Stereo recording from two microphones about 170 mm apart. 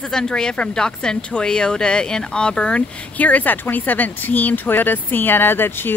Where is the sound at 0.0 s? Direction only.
5° left (ahead or behind).